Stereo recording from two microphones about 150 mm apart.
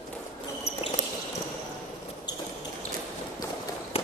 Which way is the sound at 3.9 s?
40° left (ahead or behind).